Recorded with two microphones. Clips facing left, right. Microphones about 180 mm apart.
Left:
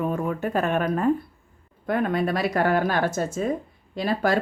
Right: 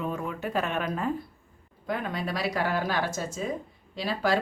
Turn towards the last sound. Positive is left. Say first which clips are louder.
# left 4 dB
turn(degrees=50)  # may be behind; listen again after turning